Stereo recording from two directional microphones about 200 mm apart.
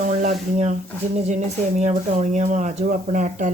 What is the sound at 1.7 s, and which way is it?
Speech, 35° right (ahead or behind).